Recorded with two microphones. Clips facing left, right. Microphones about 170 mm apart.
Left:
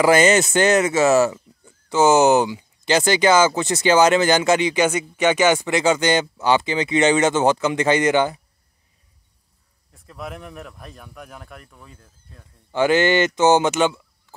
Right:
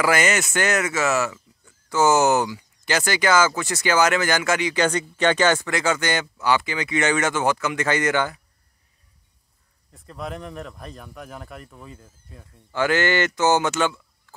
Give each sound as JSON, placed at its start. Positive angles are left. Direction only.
{"t": 0.0, "sound": "speech", "side_deg": 25}
{"t": 4.8, "sound": "speech", "side_deg": 10}
{"t": 9.9, "sound": "speech", "side_deg": 0}
{"t": 12.7, "sound": "speech", "side_deg": 20}